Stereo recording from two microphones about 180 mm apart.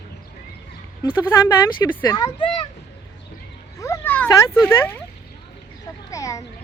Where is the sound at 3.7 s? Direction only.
15° left (ahead or behind).